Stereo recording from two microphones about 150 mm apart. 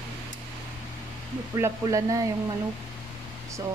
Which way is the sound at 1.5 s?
20° right (ahead or behind).